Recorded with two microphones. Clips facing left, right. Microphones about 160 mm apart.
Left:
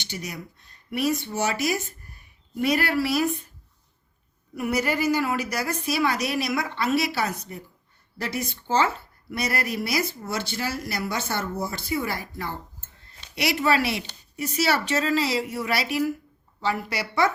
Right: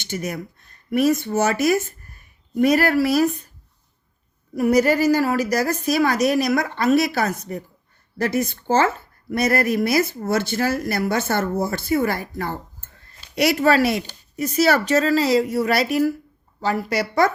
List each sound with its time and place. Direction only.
0.0 s speech: 50° right (ahead or behind)
4.5 s speech: 40° right (ahead or behind)